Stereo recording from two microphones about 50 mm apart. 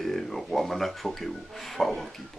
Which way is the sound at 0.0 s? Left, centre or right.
Centre.